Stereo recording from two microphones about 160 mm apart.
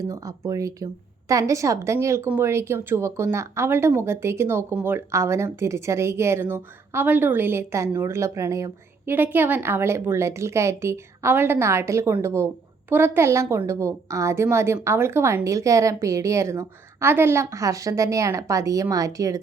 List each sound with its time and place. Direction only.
0.0 s a woman's voice: 20° right (ahead or behind)